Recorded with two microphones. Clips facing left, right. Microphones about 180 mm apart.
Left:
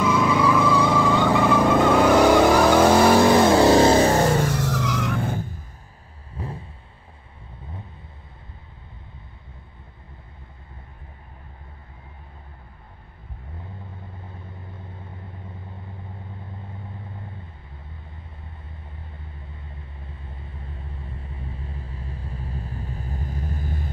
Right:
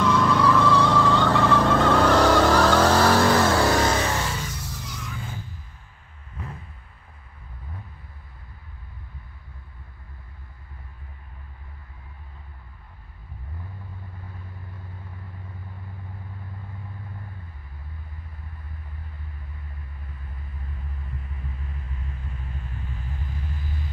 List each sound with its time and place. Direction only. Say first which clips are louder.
0.0 s vehicle: left 1 dB; 10° left (ahead or behind); by 4.5 s 50° left (ahead or behind)
4.5 s vehicle: left 13 dB; 90° left; by 5.5 s 55° left (ahead or behind)
6.3 s a sound: left 5 dB; 30° left (ahead or behind)
14.2 s vehicle: left 2 dB; 25° left (ahead or behind)
19.7 s vehicle: left 2 dB; 25° left (ahead or behind); by 23.9 s 45° left (ahead or behind)